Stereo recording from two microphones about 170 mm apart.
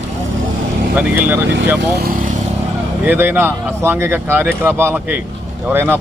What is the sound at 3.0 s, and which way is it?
Speech, 10° right (ahead or behind).